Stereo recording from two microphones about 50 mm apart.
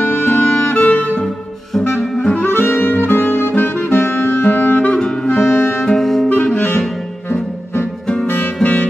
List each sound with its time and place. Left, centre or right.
0.0 s music: left
2.1 s saxophone: left
2.4 s music: left
4.9 s clarinet: centre
5.5 s music: left
5.9 s music: centre
6.3 s clarinet: left